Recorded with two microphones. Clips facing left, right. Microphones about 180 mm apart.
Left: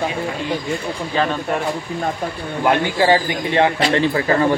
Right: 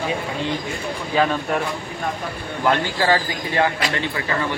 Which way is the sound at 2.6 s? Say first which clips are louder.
Left 4 dB; 20° left (ahead or behind).